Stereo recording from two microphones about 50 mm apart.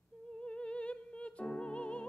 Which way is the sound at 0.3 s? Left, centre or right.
Left.